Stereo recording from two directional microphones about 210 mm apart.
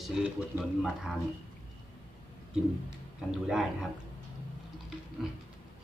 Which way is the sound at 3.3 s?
Centre (ahead or behind).